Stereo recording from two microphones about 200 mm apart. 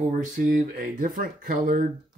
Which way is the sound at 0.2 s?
45° right (ahead or behind).